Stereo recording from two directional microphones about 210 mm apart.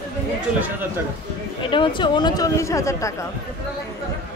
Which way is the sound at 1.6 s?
25° left (ahead or behind).